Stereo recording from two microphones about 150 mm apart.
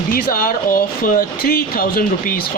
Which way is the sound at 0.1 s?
70° left (ahead or behind).